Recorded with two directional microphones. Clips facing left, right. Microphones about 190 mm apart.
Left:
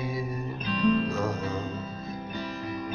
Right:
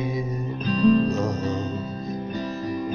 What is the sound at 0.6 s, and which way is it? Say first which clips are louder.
Music: right 6 dB; 40° right (ahead or behind).